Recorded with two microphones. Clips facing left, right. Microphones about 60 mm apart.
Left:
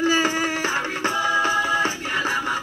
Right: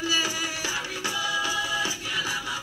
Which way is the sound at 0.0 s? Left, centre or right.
Left.